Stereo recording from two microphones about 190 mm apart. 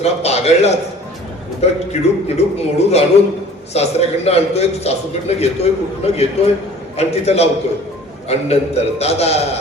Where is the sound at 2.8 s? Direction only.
35° left (ahead or behind).